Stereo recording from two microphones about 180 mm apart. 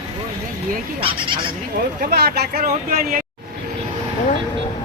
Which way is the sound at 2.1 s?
65° right (ahead or behind).